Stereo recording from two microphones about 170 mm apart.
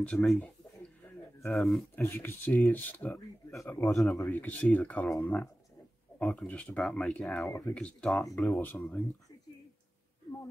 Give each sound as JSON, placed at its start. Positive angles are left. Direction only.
{"t": 0.1, "sound": "speech", "side_deg": 5}
{"t": 1.5, "sound": "speech", "side_deg": 0}
{"t": 2.0, "sound": "speech", "side_deg": 10}
{"t": 3.8, "sound": "speech", "side_deg": 0}
{"t": 4.2, "sound": "speech", "side_deg": 15}
{"t": 7.4, "sound": "speech", "side_deg": 15}
{"t": 7.7, "sound": "speech", "side_deg": 5}